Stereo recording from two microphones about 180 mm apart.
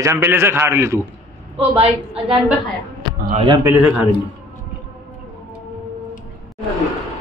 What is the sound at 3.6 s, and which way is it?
Speech, 10° right (ahead or behind).